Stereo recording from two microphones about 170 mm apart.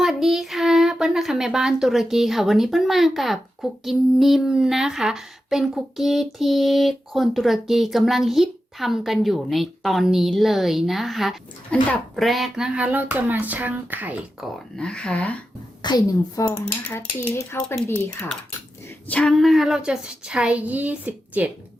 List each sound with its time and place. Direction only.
0.0 s speech: centre (ahead or behind)
14.8 s speech: 5° left (ahead or behind)
15.8 s a woman's voice: 25° left (ahead or behind); by 21.5 s 10° right (ahead or behind)